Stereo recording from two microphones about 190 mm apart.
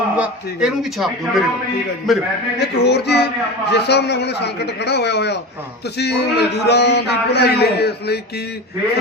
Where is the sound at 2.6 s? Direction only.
60° left (ahead or behind).